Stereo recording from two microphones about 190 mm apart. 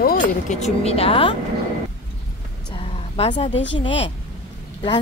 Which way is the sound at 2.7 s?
30° left (ahead or behind).